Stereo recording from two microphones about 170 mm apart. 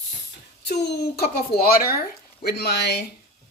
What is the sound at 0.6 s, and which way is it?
Speech, 75° left (ahead or behind).